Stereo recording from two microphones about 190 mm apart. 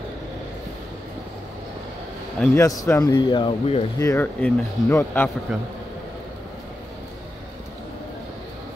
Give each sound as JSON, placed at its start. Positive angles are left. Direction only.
{"t": 2.4, "sound": "speech", "side_deg": 15}
{"t": 4.0, "sound": "speech", "side_deg": 10}
{"t": 5.5, "sound": "a man's voice", "side_deg": 0}